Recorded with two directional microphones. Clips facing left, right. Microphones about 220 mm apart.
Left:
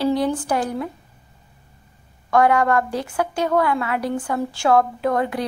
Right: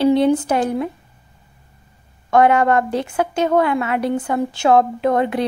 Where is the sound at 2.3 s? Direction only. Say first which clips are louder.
Right 3 dB; 25° right (ahead or behind).